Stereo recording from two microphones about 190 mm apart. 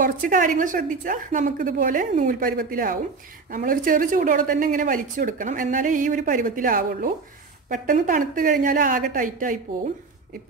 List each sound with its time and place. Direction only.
0.0 s a woman's voice: 45° right (ahead or behind)